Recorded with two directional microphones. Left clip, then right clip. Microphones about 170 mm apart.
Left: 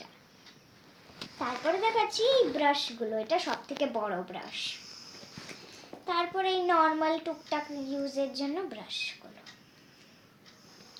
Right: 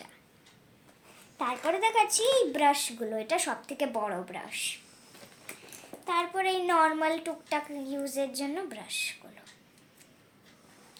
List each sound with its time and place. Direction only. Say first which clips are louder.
1.4 s a woman's voice: right 1 dB; 25° right (ahead or behind)
3.7 s a woman's voice: even; 30° right (ahead or behind)
6.1 s a woman's voice: right 1 dB; 25° right (ahead or behind)